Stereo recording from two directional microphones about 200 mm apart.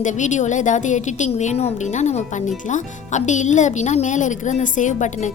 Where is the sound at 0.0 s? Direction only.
40° left (ahead or behind).